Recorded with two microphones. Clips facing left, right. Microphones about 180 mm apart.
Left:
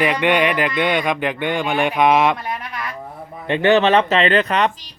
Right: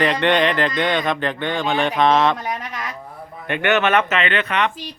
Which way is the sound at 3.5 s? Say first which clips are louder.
Left 4 dB; 30° left (ahead or behind).